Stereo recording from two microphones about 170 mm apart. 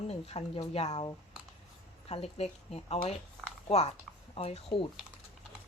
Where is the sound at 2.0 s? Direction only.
35° left (ahead or behind).